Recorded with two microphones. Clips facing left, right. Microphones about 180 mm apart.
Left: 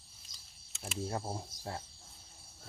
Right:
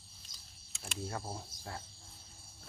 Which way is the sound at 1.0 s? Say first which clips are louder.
Left 3 dB; 25° left (ahead or behind).